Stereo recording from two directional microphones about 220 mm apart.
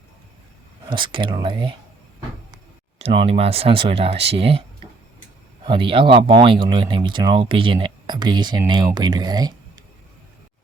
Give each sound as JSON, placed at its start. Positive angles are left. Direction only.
{"t": 0.9, "sound": "speech", "side_deg": -20}
{"t": 3.0, "sound": "speech", "side_deg": -25}
{"t": 5.6, "sound": "speech", "side_deg": -25}